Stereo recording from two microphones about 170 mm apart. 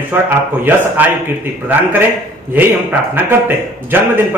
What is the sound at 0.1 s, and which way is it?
A man's voice, 10° right (ahead or behind).